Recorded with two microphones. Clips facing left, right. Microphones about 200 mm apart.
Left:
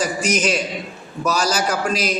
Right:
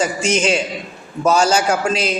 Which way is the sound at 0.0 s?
25° right (ahead or behind).